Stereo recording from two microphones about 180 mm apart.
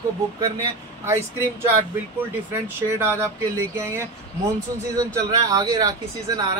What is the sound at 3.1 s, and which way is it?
Speech, 15° right (ahead or behind).